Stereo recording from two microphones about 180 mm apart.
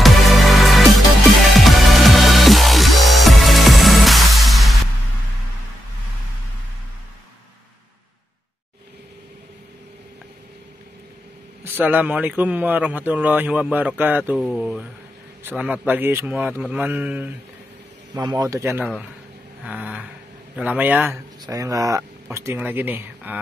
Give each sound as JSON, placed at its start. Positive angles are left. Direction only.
{"t": 0.0, "sound": "music", "side_deg": 0}
{"t": 11.8, "sound": "a man's voice", "side_deg": -10}
{"t": 18.2, "sound": "a man's voice", "side_deg": -20}